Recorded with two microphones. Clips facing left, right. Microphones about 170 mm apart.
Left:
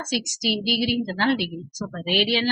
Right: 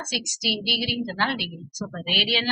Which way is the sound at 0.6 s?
40° left (ahead or behind).